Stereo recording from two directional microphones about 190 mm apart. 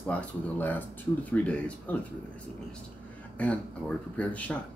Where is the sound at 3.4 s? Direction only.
5° left (ahead or behind).